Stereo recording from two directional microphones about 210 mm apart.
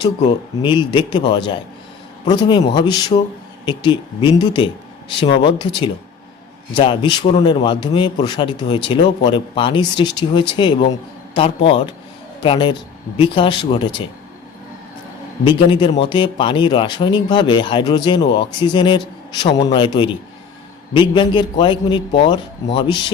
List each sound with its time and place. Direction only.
0.3 s speech: 20° left (ahead or behind)
15.4 s speech: 25° left (ahead or behind)